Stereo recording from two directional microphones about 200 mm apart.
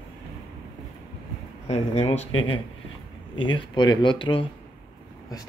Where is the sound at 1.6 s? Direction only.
30° left (ahead or behind).